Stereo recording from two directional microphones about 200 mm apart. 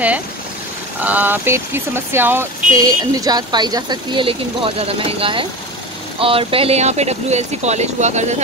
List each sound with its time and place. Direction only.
1.0 s speech: 10° right (ahead or behind); by 8.4 s 35° right (ahead or behind)